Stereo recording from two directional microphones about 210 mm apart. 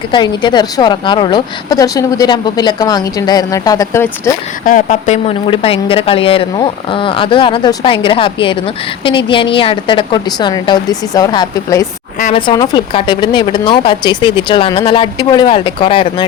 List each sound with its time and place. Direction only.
0.1 s speech: 20° left (ahead or behind)
4.6 s speech: 35° left (ahead or behind)